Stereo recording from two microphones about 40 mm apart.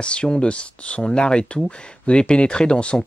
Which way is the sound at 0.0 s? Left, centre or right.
Left.